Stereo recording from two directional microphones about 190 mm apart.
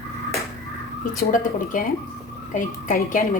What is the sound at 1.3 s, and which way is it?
A woman's voice, 45° left (ahead or behind).